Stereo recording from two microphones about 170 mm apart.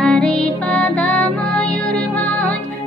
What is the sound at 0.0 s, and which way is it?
Music, 5° left (ahead or behind).